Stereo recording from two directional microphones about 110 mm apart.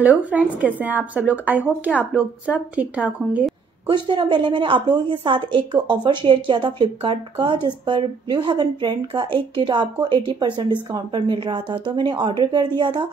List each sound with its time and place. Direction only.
0.0 s speech: 15° right (ahead or behind)
3.8 s a woman's voice: 45° right (ahead or behind)